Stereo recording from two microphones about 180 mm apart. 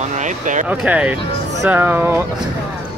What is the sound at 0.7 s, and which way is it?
Speech, 5° right (ahead or behind).